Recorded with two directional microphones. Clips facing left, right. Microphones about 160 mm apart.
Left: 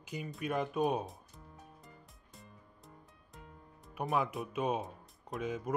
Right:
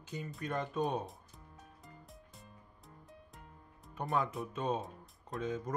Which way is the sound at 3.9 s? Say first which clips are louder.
Left 1 dB; 10° left (ahead or behind).